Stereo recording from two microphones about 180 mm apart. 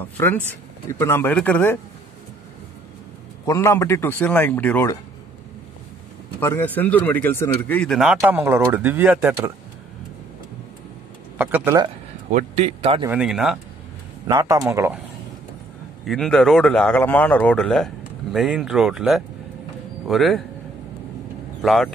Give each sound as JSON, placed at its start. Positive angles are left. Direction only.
{"t": 0.0, "sound": "speech", "side_deg": 10}
{"t": 3.4, "sound": "speech", "side_deg": 15}
{"t": 6.4, "sound": "a man's voice", "side_deg": 10}
{"t": 11.3, "sound": "a man's voice", "side_deg": -10}
{"t": 12.3, "sound": "a man's voice", "side_deg": -40}
{"t": 13.0, "sound": "a man's voice", "side_deg": -5}
{"t": 14.2, "sound": "a man's voice", "side_deg": -20}
{"t": 16.1, "sound": "a man's voice", "side_deg": 5}
{"t": 21.5, "sound": "speech", "side_deg": 0}